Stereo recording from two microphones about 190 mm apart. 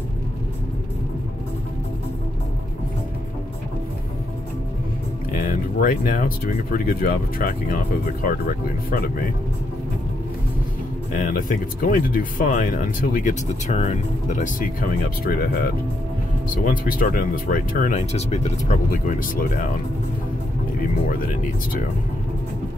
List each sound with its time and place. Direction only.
5.3 s speech: 45° left (ahead or behind)
11.1 s speech: 45° left (ahead or behind)
16.6 s speech: 45° left (ahead or behind)